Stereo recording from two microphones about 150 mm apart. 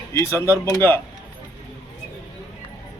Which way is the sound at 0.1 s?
20° left (ahead or behind).